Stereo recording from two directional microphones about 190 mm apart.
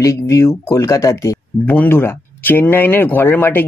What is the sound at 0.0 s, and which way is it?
Speech, 15° left (ahead or behind).